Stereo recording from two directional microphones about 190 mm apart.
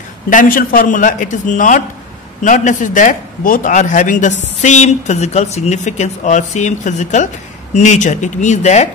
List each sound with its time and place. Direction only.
0.3 s a man's voice: 45° left (ahead or behind)